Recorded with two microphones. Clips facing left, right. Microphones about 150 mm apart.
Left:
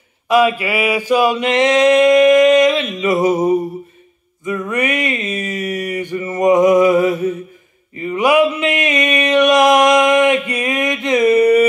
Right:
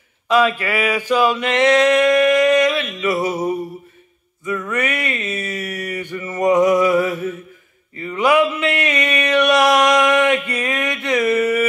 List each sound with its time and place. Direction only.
0.3 s mantra: 15° left (ahead or behind)
3.0 s music: 15° left (ahead or behind)
4.5 s mantra: 15° left (ahead or behind)
7.9 s a sound: 20° left (ahead or behind)